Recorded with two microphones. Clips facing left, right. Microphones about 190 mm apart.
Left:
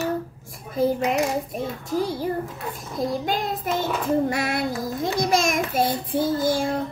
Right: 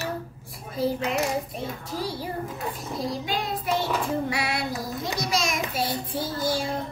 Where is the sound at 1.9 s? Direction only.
50° left (ahead or behind).